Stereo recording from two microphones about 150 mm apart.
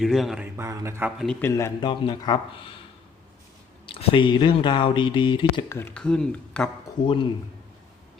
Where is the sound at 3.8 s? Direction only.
35° left (ahead or behind).